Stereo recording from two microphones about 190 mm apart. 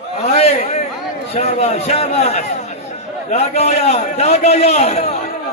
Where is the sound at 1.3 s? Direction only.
35° left (ahead or behind).